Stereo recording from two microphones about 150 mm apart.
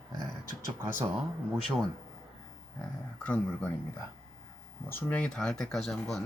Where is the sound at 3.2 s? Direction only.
10° left (ahead or behind).